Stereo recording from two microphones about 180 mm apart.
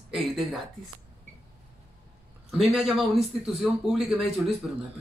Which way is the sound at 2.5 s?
Centre (ahead or behind).